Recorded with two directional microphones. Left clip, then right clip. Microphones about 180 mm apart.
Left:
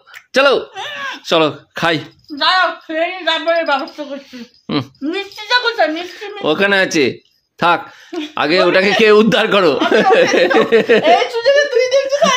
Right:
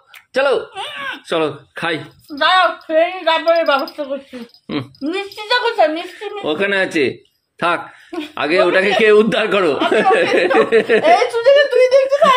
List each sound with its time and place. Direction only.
0.3 s speech: 45° left (ahead or behind)
0.7 s baby cry: centre (ahead or behind)
1.2 s speech: 40° left (ahead or behind)
2.3 s a woman's voice: 5° right (ahead or behind)
4.7 s a man's voice: 50° left (ahead or behind)
5.0 s a woman's voice: 5° right (ahead or behind)
6.4 s a man's voice: 45° left (ahead or behind)
11.0 s speech: centre (ahead or behind)